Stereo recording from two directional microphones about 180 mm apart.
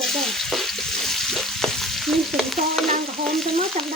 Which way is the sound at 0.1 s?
Centre (ahead or behind).